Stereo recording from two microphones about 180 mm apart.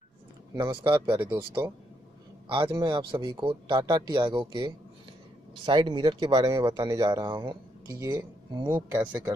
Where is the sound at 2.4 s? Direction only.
30° right (ahead or behind).